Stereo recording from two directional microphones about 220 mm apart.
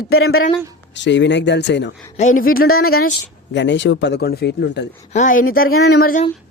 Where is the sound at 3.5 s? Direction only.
55° left (ahead or behind).